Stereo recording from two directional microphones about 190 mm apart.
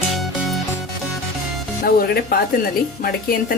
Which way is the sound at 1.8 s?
50° left (ahead or behind).